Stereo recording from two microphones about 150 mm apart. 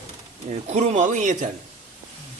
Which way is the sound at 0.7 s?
50° right (ahead or behind).